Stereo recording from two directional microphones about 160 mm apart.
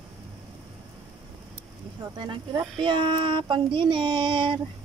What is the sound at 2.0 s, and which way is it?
Speech, 25° right (ahead or behind).